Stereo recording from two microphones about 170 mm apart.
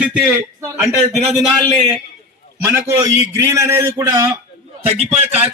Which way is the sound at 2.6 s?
15° right (ahead or behind).